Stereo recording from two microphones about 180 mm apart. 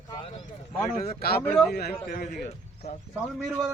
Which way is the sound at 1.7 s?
55° left (ahead or behind).